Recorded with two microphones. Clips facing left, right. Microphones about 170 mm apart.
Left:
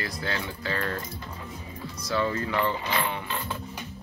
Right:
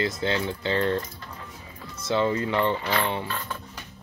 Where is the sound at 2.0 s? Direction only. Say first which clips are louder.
Right 4 dB; 25° right (ahead or behind).